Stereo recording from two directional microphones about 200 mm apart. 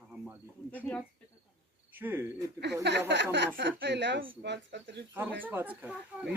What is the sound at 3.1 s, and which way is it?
Speech, 60° right (ahead or behind).